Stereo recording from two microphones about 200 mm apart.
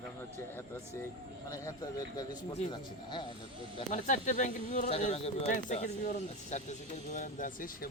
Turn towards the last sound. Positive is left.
turn(degrees=45)  # may be behind; listen again after turning